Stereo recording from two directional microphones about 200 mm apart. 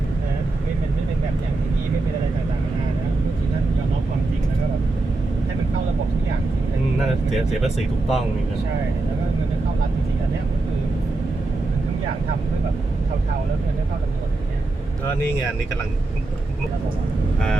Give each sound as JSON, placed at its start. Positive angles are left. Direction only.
{"t": 7.3, "sound": "speech", "side_deg": 0}